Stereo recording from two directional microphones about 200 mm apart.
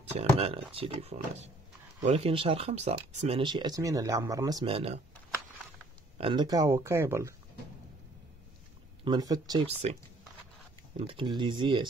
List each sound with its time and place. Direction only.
0.2 s speech: 30° right (ahead or behind)
6.1 s speech: 25° right (ahead or behind)
9.0 s speech: 20° right (ahead or behind)
9.7 s speech: 30° right (ahead or behind)
11.0 s speech: 25° right (ahead or behind)